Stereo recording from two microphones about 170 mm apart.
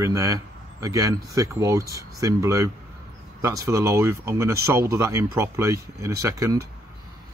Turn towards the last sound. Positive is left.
turn(degrees=-15)  # may be behind; listen again after turning